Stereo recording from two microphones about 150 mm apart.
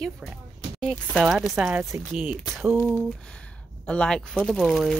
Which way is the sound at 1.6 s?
15° right (ahead or behind).